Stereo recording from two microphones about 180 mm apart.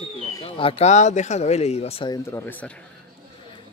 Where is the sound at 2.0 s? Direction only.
15° left (ahead or behind).